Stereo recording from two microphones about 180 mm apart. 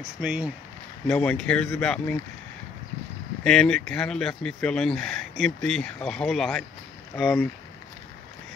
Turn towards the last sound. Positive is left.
turn(degrees=0)  # may be behind; listen again after turning